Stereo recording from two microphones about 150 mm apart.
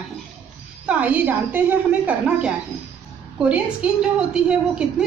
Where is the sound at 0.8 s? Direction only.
10° right (ahead or behind).